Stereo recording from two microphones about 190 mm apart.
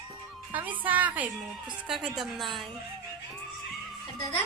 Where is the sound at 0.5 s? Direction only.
10° right (ahead or behind).